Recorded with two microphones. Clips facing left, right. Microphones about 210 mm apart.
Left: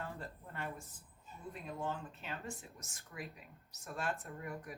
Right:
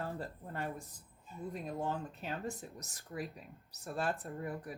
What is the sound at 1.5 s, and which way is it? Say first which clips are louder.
Speech: right 3 dB; 40° right (ahead or behind).